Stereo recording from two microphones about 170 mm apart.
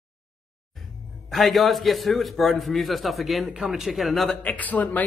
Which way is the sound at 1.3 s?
Centre (ahead or behind).